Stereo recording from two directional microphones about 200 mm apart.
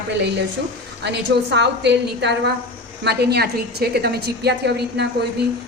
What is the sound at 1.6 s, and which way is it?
A woman's voice, 60° right (ahead or behind).